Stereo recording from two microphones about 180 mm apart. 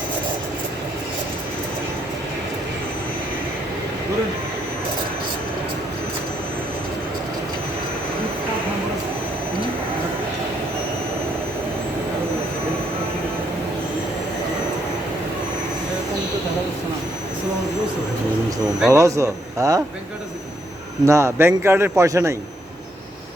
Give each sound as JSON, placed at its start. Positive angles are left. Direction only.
{"t": 18.9, "sound": "a man's voice", "side_deg": -15}
{"t": 21.1, "sound": "a man's voice", "side_deg": -15}